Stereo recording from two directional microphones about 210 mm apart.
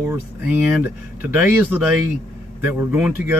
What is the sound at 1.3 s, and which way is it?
Speech, 10° right (ahead or behind).